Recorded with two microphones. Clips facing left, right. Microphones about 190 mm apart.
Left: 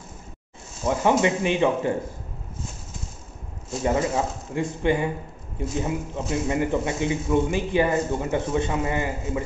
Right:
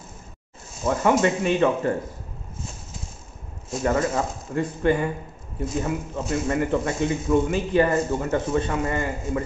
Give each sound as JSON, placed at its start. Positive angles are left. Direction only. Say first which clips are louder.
{"t": 0.8, "sound": "a man's voice", "louder": "right 1 dB", "side_deg": 15}
{"t": 3.8, "sound": "a man's voice", "louder": "even", "side_deg": 15}